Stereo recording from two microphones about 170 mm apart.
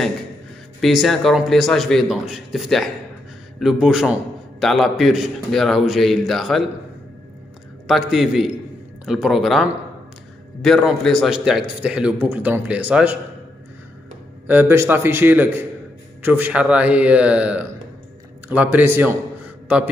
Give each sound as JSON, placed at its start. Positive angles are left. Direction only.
{"t": 0.7, "sound": "a man's voice", "side_deg": 0}
{"t": 7.8, "sound": "a man's voice", "side_deg": 0}
{"t": 14.5, "sound": "a man's voice", "side_deg": -15}